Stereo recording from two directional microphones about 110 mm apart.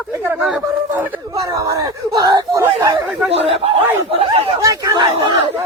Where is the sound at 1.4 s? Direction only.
30° right (ahead or behind).